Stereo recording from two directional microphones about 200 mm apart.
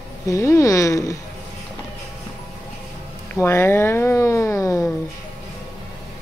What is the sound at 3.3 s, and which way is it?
Speech, 10° left (ahead or behind).